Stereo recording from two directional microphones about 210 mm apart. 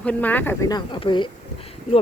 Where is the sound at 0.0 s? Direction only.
5° left (ahead or behind).